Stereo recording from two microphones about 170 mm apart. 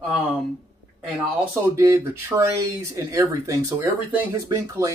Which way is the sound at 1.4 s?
15° right (ahead or behind).